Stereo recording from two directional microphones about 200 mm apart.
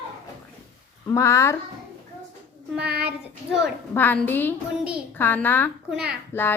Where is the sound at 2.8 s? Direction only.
55° right (ahead or behind).